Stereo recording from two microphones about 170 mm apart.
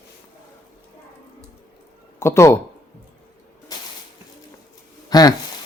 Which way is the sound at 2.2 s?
15° left (ahead or behind).